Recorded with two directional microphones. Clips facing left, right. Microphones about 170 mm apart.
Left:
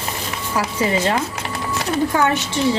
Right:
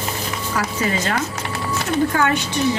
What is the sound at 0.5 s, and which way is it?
Speech, 25° left (ahead or behind).